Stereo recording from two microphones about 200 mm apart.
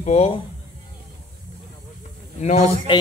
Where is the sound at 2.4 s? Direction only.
35° left (ahead or behind).